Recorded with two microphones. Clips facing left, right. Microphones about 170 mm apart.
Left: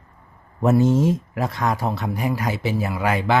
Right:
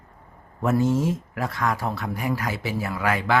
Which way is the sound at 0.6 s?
20° left (ahead or behind).